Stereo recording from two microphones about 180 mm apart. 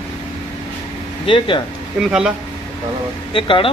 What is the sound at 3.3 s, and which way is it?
Speech, 30° left (ahead or behind).